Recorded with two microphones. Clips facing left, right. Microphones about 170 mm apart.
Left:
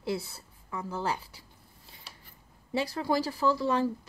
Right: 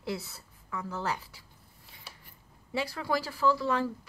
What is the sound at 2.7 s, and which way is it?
Speech, 30° left (ahead or behind).